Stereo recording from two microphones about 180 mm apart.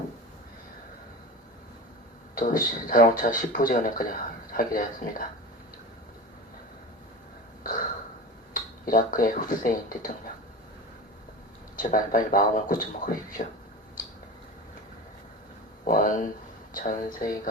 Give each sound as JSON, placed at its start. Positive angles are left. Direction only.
{"t": 2.3, "sound": "speech", "side_deg": 50}
{"t": 8.8, "sound": "speech", "side_deg": 50}
{"t": 11.8, "sound": "speech", "side_deg": 50}
{"t": 15.8, "sound": "speech", "side_deg": 50}